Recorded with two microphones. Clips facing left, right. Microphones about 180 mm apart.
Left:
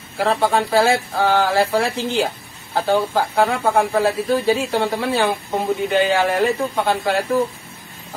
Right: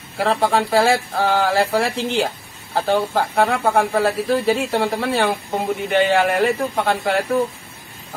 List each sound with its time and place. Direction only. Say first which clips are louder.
0.2 s speech: even; centre (ahead or behind)